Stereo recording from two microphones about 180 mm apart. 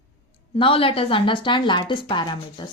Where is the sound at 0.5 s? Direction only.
30° left (ahead or behind).